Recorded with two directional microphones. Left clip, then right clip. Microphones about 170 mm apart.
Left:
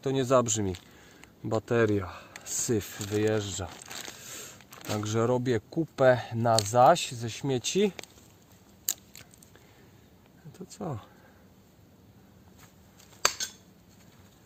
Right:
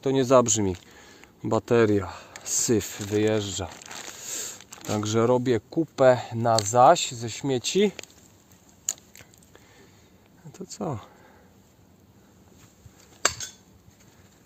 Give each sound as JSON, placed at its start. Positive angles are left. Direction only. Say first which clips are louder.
{"t": 0.0, "sound": "speech", "louder": "right 5 dB", "side_deg": -55}
{"t": 3.8, "sound": "a sound", "louder": "right 2 dB", "side_deg": 0}
{"t": 4.2, "sound": "a sound", "louder": "right 8 dB", "side_deg": -70}
{"t": 4.9, "sound": "speech", "louder": "right 5 dB", "side_deg": -60}
{"t": 8.9, "sound": "keys jangling", "louder": "right 3 dB", "side_deg": 75}
{"t": 10.5, "sound": "speech", "louder": "right 6 dB", "side_deg": -70}